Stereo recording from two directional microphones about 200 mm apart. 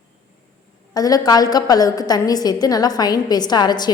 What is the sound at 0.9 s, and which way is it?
A woman's voice, 20° left (ahead or behind).